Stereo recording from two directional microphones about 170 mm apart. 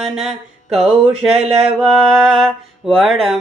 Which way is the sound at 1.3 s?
40° right (ahead or behind).